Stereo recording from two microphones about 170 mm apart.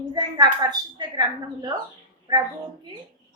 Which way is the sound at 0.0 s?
25° right (ahead or behind).